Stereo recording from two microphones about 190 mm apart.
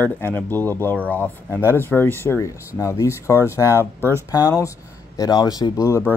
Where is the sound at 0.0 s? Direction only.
10° left (ahead or behind).